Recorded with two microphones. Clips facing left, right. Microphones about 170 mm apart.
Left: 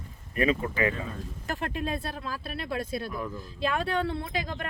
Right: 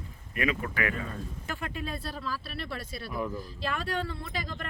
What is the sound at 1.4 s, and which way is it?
Speech, 45° left (ahead or behind).